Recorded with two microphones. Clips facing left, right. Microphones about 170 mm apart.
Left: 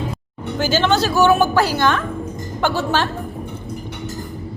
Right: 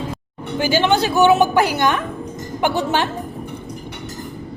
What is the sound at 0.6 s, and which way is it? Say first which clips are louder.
A woman's voice: right 1 dB; 15° right (ahead or behind).